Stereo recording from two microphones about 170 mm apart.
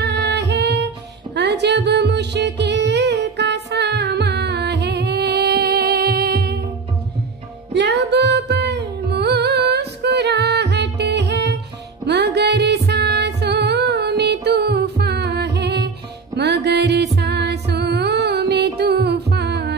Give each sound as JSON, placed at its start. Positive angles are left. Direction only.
{"t": 0.0, "sound": "music", "side_deg": -85}
{"t": 7.7, "sound": "music", "side_deg": -85}